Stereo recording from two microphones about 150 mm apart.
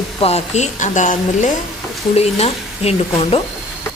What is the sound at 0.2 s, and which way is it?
A woman's voice, 45° left (ahead or behind).